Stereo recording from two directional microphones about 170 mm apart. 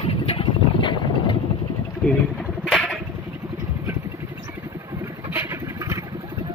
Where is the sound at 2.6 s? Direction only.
Centre (ahead or behind).